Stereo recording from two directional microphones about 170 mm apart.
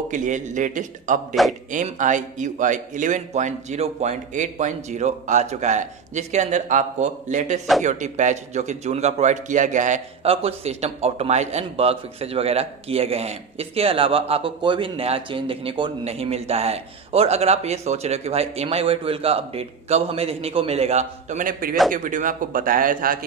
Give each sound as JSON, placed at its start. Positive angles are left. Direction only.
{"t": 0.1, "sound": "a man's voice", "side_deg": -45}